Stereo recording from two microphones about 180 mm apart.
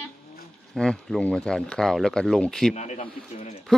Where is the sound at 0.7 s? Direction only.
5° left (ahead or behind).